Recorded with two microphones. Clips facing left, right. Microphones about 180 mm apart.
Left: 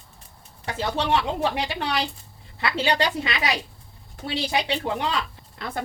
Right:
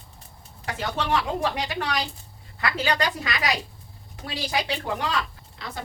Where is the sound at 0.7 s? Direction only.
30° left (ahead or behind).